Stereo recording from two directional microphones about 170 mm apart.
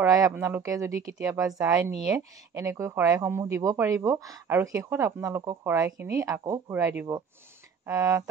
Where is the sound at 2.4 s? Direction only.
20° right (ahead or behind).